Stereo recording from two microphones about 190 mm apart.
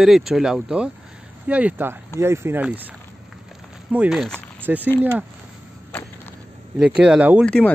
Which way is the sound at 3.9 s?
5° right (ahead or behind).